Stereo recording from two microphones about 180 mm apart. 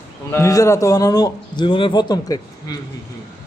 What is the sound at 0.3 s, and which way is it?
Speech, 15° left (ahead or behind).